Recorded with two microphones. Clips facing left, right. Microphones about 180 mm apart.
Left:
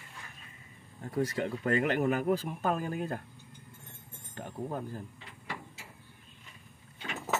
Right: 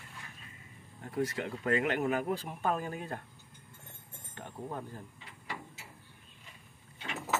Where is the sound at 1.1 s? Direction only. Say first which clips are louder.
Left 3 dB; 35° left (ahead or behind).